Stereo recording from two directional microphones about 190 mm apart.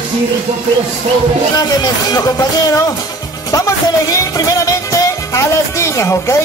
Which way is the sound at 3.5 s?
15° left (ahead or behind).